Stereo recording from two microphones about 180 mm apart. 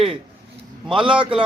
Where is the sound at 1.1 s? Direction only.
25° right (ahead or behind).